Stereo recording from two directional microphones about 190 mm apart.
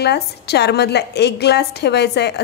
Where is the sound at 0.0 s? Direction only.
60° left (ahead or behind).